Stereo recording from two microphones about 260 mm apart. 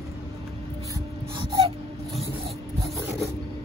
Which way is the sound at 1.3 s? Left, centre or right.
Centre.